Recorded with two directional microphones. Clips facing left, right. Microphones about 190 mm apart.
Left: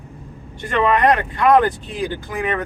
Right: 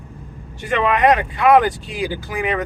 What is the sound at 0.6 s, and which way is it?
Speech, 10° right (ahead or behind).